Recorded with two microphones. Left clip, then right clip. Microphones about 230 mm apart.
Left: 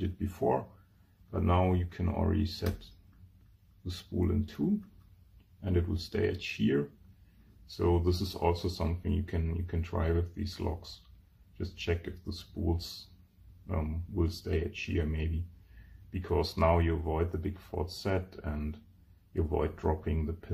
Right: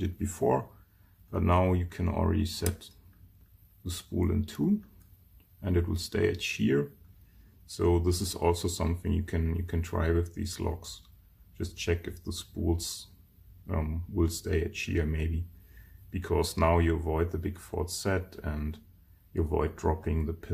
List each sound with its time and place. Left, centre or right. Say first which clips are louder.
0.0 s speech: right 2 dB; centre
3.8 s speech: right 2 dB; centre